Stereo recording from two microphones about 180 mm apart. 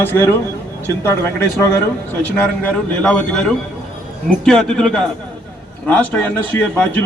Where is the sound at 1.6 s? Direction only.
15° left (ahead or behind).